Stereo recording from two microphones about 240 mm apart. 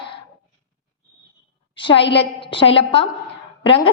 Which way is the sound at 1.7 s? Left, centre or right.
Left.